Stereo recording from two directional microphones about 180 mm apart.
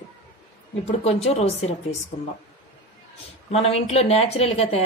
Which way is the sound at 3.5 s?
35° left (ahead or behind).